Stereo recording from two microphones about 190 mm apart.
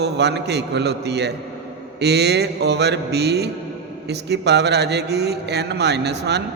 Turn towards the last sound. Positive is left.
turn(degrees=-60)  # may be behind; listen again after turning